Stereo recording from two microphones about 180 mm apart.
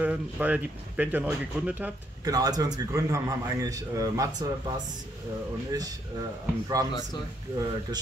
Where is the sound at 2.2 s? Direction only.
20° right (ahead or behind).